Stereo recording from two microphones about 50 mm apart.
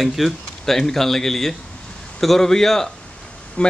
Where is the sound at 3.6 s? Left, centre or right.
Left.